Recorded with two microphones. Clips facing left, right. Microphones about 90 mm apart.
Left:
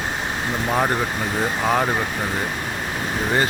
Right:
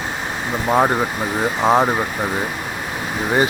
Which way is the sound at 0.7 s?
20° right (ahead or behind).